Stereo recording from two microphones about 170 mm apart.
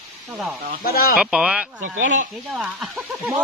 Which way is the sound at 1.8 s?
50° right (ahead or behind).